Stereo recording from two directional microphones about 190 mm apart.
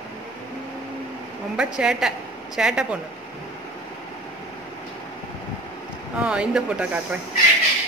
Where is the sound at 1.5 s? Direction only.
5° right (ahead or behind).